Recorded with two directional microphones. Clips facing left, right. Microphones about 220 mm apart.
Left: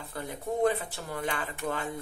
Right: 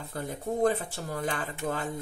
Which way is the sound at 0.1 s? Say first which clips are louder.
Right 1 dB; 45° right (ahead or behind).